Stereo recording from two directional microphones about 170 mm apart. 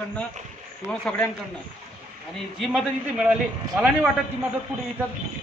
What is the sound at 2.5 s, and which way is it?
A man's voice, centre (ahead or behind).